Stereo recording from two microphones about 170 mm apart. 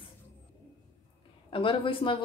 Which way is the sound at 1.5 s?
30° left (ahead or behind).